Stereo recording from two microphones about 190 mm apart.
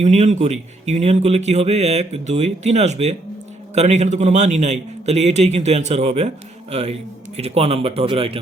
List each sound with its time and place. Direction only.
0.0 s a man's voice: 35° right (ahead or behind)